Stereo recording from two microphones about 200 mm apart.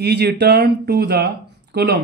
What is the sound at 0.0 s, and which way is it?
Speech, 55° right (ahead or behind).